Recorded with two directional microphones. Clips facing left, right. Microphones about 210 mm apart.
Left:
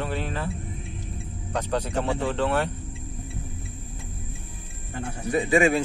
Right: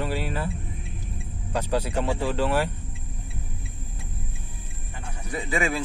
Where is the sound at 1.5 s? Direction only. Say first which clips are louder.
Right 1 dB; 10° right (ahead or behind).